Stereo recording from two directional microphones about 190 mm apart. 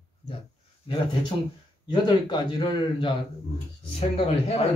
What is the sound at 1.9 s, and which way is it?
A man's voice, 25° left (ahead or behind).